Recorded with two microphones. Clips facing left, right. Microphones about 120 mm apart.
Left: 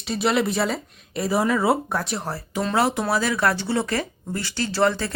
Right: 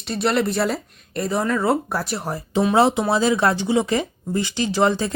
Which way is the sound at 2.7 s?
25° right (ahead or behind).